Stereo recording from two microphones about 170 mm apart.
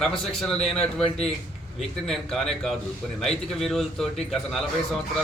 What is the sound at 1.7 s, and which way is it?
A man's voice, centre (ahead or behind).